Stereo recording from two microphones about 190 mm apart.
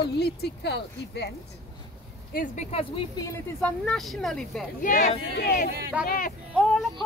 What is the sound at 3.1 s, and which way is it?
Speech, 20° left (ahead or behind).